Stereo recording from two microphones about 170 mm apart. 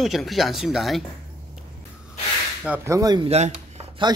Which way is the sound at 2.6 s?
10° right (ahead or behind).